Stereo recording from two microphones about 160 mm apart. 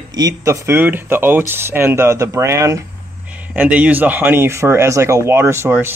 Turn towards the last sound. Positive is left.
turn(degrees=-15)  # may be behind; listen again after turning